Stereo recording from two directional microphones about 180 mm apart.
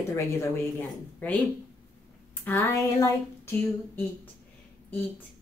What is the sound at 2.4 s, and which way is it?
Speech, 15° left (ahead or behind).